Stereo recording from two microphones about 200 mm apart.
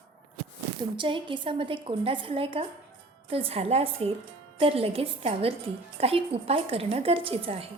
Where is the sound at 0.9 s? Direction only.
25° right (ahead or behind).